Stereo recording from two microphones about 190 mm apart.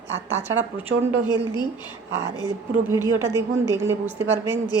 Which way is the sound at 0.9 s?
90° right.